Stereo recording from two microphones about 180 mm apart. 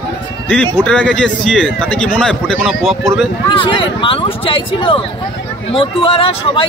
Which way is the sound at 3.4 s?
25° left (ahead or behind).